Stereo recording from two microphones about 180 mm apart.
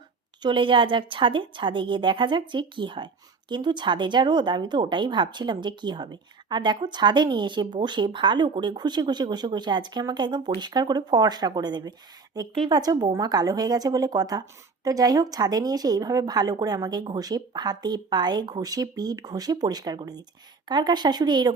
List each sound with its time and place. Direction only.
0.4 s a woman's voice: 25° right (ahead or behind)